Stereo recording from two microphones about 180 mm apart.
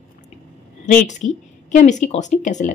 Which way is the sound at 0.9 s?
45° left (ahead or behind).